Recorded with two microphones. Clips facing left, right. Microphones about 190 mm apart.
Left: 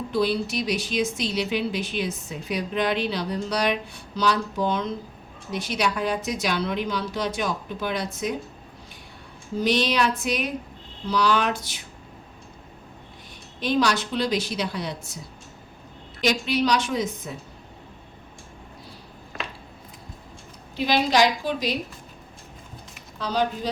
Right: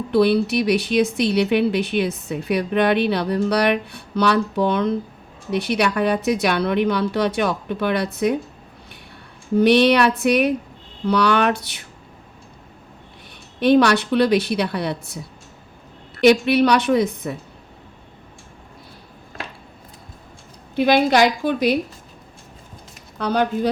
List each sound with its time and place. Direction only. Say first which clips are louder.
0.1 s speech: right 8 dB; 65° right (ahead or behind)
9.6 s speech: right 8 dB; 60° right (ahead or behind)
13.6 s speech: right 8 dB; 60° right (ahead or behind)
20.7 s speech: right 5 dB; 55° right (ahead or behind)
23.1 s speech: right 5 dB; 55° right (ahead or behind)